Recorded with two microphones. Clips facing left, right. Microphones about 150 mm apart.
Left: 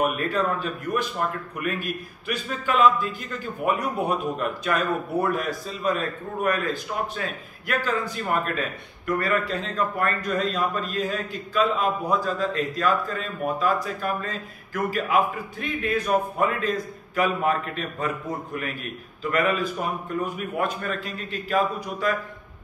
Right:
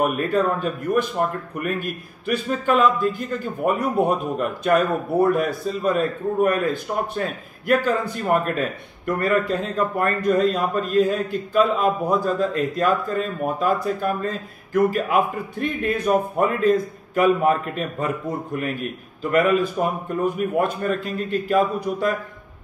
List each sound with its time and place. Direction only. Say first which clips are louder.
0.0 s a man's voice: right 4 dB; 50° right (ahead or behind)
19.3 s a man's voice: right 6 dB; 50° right (ahead or behind)